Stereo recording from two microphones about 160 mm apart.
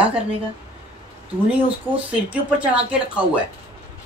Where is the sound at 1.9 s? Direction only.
10° right (ahead or behind).